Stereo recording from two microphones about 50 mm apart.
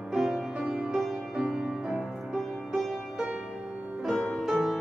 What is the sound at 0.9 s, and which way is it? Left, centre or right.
Music, centre.